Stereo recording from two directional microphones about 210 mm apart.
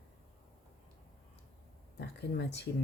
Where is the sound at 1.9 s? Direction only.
55° left (ahead or behind).